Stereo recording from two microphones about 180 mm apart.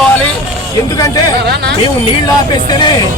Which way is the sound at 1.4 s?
65° right (ahead or behind).